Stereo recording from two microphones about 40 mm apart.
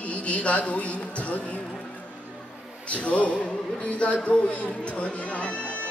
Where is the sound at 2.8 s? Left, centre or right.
Left.